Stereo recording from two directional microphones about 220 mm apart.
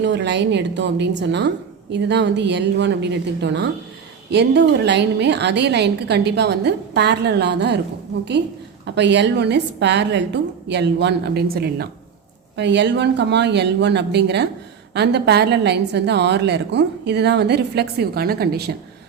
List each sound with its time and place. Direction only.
0.0 s a woman's voice: 50° right (ahead or behind)